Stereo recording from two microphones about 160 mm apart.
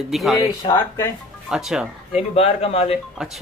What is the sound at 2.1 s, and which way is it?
Speech, 40° left (ahead or behind).